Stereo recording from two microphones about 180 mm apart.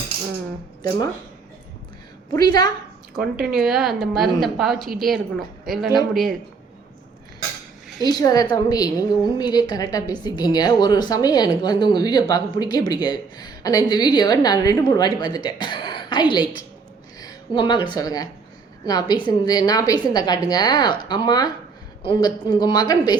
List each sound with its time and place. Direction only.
2.3 s a woman's voice: 20° left (ahead or behind)
3.2 s a woman's voice: 5° right (ahead or behind)
8.0 s a woman's voice: 20° left (ahead or behind)